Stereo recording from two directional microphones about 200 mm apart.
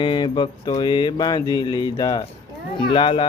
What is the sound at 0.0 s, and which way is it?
Mantra, 25° left (ahead or behind).